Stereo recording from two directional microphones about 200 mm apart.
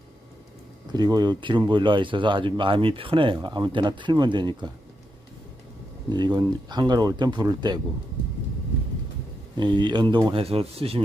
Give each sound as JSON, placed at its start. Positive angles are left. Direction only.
{"t": 0.9, "sound": "speech", "side_deg": -20}
{"t": 6.1, "sound": "speech", "side_deg": -20}
{"t": 9.6, "sound": "speech", "side_deg": -25}